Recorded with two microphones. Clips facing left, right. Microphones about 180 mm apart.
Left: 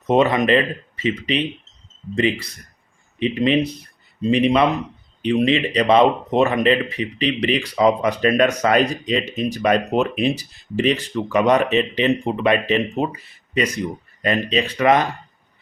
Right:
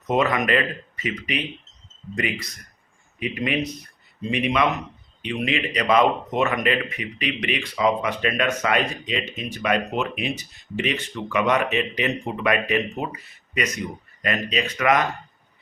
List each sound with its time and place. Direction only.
0.1 s speech: 25° left (ahead or behind)